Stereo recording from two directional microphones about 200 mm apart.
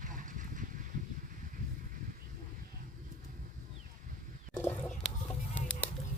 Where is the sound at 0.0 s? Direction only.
40° right (ahead or behind).